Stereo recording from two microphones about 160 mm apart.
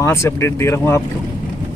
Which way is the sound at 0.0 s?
15° left (ahead or behind).